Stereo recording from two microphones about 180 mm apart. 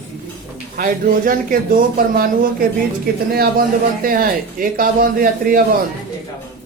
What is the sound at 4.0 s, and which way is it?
Speech, 50° right (ahead or behind).